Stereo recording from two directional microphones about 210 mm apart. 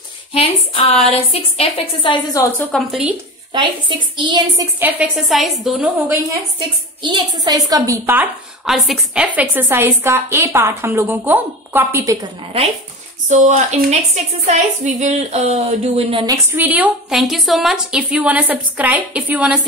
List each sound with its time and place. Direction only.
0.3 s a woman's voice: 25° left (ahead or behind)
2.7 s a woman's voice: 5° right (ahead or behind)
3.5 s a sound: 20° right (ahead or behind)
4.7 s a woman's voice: 5° right (ahead or behind)
7.0 s a woman's voice: 20° right (ahead or behind)
13.3 s a woman's voice: 35° right (ahead or behind)
16.1 s a sound: 25° right (ahead or behind)
16.5 s a woman's voice: 10° right (ahead or behind)